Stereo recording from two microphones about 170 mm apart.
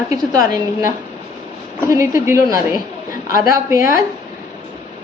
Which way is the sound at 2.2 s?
15° right (ahead or behind).